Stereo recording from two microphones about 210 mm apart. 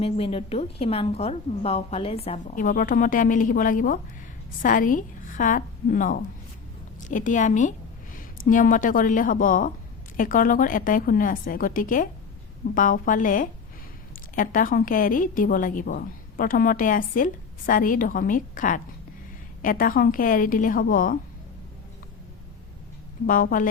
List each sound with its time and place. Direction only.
0.0 s a woman's voice: 25° left (ahead or behind)
23.2 s a woman's voice: 40° left (ahead or behind)